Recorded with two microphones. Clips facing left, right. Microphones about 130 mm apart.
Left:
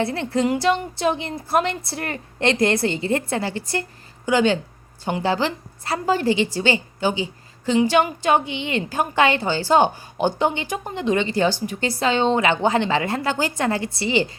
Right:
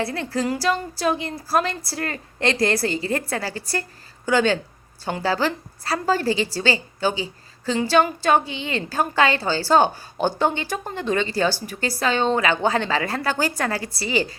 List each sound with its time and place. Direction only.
0.0 s a woman's voice: 25° left (ahead or behind)